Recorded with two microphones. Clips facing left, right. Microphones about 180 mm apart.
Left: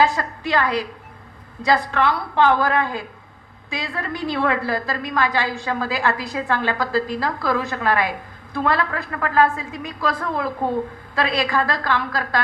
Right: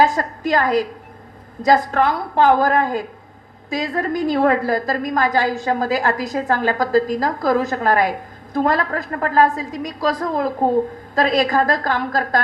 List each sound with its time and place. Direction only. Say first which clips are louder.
0.0 s a woman's voice: right 3 dB; 45° right (ahead or behind)